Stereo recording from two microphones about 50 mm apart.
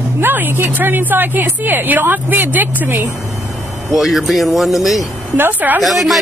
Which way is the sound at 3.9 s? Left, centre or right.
Centre.